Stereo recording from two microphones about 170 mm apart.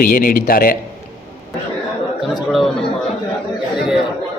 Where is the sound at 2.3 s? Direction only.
Centre (ahead or behind).